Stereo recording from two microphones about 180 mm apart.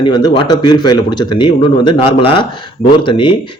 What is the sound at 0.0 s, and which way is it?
Speech, 25° left (ahead or behind).